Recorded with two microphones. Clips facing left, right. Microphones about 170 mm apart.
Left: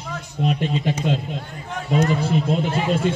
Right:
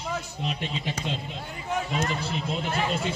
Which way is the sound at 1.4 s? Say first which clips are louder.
Right 1 dB; 5° right (ahead or behind).